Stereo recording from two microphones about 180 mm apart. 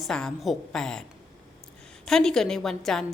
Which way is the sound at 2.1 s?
Centre (ahead or behind).